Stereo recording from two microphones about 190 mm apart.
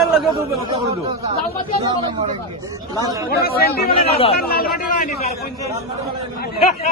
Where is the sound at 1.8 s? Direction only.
30° right (ahead or behind).